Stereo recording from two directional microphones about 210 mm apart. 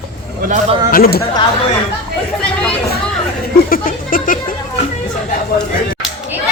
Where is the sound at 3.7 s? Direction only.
40° left (ahead or behind).